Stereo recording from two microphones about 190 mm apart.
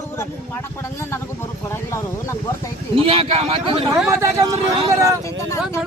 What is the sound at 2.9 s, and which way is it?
Speech, 30° right (ahead or behind).